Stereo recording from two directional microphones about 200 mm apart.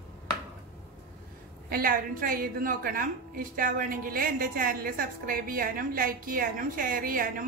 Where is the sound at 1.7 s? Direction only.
45° right (ahead or behind).